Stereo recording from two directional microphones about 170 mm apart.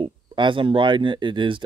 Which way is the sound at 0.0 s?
30° right (ahead or behind).